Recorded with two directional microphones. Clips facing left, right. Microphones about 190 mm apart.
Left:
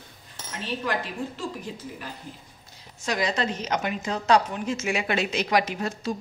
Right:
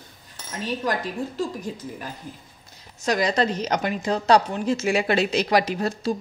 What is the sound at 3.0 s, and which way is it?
A woman's voice, 40° right (ahead or behind).